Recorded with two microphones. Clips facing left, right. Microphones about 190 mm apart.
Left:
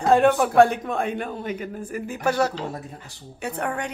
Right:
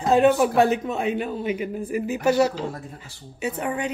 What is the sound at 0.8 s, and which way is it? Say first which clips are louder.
Speech: right 1 dB; 50° left (ahead or behind).